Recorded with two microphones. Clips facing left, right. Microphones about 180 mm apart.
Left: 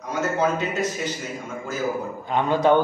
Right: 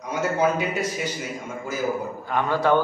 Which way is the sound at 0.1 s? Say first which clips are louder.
Right 1 dB; 10° right (ahead or behind).